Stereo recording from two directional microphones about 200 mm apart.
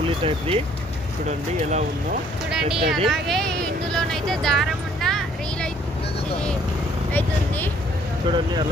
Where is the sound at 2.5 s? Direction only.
Centre (ahead or behind).